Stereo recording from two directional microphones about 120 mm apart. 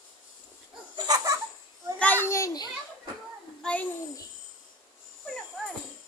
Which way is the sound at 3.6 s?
10° left (ahead or behind).